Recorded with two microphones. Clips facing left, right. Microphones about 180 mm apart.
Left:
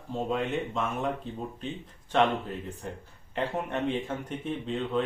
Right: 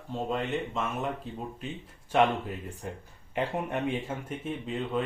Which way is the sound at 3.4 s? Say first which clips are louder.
Even; 10° right (ahead or behind).